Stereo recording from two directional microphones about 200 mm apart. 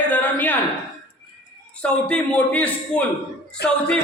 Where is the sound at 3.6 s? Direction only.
55° left (ahead or behind).